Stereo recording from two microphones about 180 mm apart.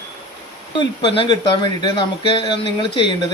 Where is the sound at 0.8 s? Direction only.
30° left (ahead or behind).